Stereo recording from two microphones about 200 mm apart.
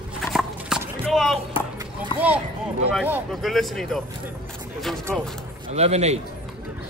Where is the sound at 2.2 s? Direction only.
10° right (ahead or behind).